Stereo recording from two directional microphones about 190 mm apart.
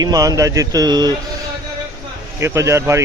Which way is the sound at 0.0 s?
20° right (ahead or behind).